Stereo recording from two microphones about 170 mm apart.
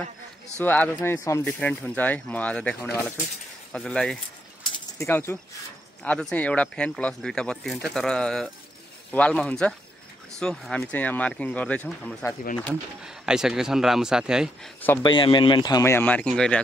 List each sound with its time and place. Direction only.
0.6 s speech: 10° left (ahead or behind)
4.9 s speech: 15° left (ahead or behind)
13.0 s speech: 5° right (ahead or behind)
15.0 s speech: 30° left (ahead or behind); by 16.6 s 5° left (ahead or behind)